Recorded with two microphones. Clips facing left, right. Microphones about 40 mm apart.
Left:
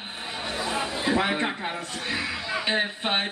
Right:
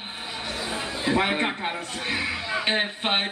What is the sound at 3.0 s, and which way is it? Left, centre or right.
Speech, right.